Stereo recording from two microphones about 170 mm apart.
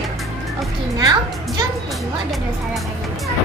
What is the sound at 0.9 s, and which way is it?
Music, 25° right (ahead or behind).